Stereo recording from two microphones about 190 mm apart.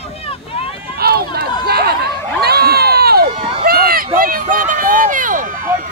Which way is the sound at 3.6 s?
50° right (ahead or behind).